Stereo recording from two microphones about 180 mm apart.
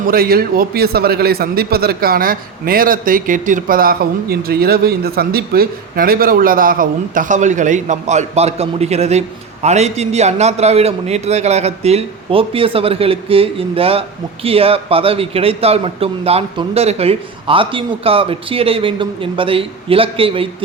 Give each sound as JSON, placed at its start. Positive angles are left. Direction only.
{"t": 0.1, "sound": "a man's voice", "side_deg": -55}